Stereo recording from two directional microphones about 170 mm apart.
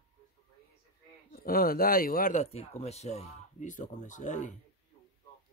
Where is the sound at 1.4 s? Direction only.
60° left (ahead or behind).